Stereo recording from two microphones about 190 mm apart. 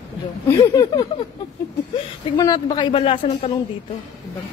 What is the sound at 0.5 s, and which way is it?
Speech, 15° left (ahead or behind).